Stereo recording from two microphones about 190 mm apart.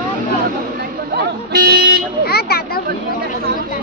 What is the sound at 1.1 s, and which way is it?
Speech, 55° right (ahead or behind).